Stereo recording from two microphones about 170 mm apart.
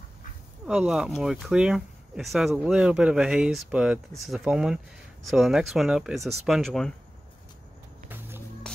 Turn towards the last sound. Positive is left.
turn(degrees=0)  # may be behind; listen again after turning